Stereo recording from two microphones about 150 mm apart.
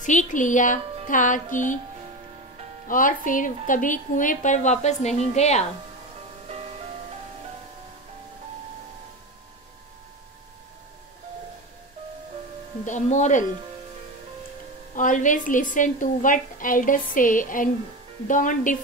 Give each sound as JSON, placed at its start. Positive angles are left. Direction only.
{"t": 0.0, "sound": "a woman's voice", "side_deg": 55}
{"t": 2.9, "sound": "a woman's voice", "side_deg": 65}
{"t": 12.8, "sound": "a woman's voice", "side_deg": 55}
{"t": 15.0, "sound": "a woman's voice", "side_deg": 60}